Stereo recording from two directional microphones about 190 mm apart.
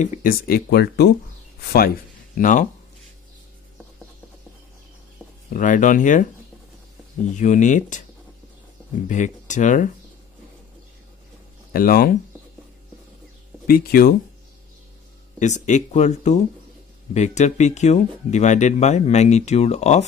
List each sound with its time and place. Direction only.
0.0 s speech: 50° left (ahead or behind)
2.3 s speech: 45° left (ahead or behind)
5.5 s speech: 45° left (ahead or behind)
7.3 s speech: 40° left (ahead or behind)
9.0 s speech: 40° left (ahead or behind)
11.7 s speech: 50° left (ahead or behind)
13.7 s speech: 50° left (ahead or behind)
15.3 s speech: 40° left (ahead or behind)